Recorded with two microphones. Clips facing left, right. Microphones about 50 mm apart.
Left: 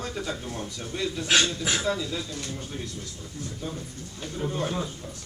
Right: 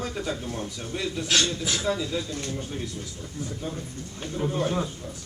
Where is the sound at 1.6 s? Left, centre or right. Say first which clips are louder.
Left 1 dB; left.